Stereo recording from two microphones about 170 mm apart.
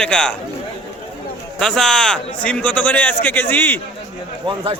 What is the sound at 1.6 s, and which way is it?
A man's voice, 5° left (ahead or behind).